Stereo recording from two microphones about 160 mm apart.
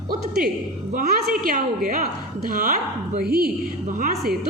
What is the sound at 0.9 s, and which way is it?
A woman's voice, 60° right (ahead or behind).